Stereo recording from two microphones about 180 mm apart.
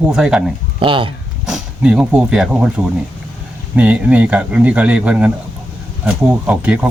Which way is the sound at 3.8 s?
10° right (ahead or behind).